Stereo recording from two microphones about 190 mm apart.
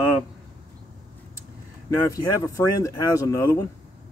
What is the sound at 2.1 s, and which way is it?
Speech, 20° left (ahead or behind).